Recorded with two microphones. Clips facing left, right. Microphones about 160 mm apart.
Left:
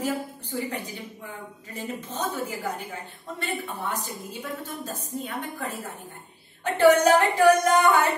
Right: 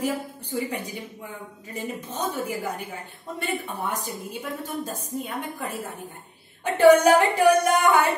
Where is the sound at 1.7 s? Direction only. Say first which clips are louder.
Right 1 dB; 10° right (ahead or behind).